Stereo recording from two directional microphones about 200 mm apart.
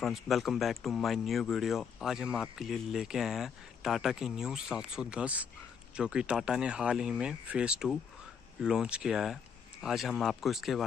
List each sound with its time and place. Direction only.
0.0 s speech: centre (ahead or behind)